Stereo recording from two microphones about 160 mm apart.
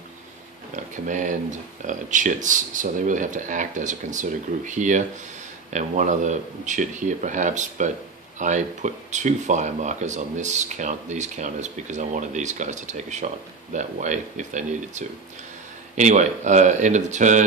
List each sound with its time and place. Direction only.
0.9 s speech: 50° right (ahead or behind)